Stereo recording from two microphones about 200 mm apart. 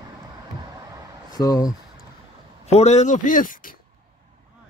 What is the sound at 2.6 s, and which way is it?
A man's voice, 35° left (ahead or behind).